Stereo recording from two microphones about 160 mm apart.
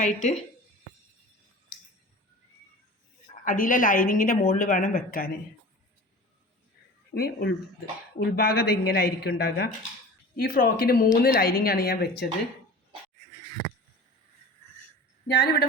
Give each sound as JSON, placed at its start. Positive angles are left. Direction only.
{"t": 0.0, "sound": "speech", "side_deg": 50}
{"t": 3.4, "sound": "speech", "side_deg": 55}
{"t": 7.1, "sound": "a woman's voice", "side_deg": 85}
{"t": 10.3, "sound": "a woman's voice", "side_deg": 65}